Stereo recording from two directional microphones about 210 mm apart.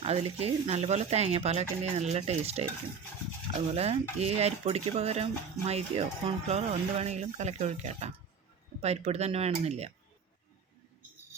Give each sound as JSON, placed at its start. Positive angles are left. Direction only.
{"t": 0.0, "sound": "speech", "side_deg": -30}
{"t": 3.7, "sound": "stir", "side_deg": -30}
{"t": 4.2, "sound": "speech", "side_deg": -30}